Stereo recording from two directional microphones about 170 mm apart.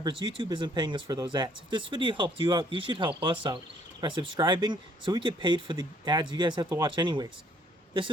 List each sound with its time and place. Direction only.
0.0 s speech: 30° right (ahead or behind)